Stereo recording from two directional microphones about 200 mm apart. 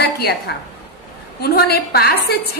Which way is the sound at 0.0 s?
55° left (ahead or behind).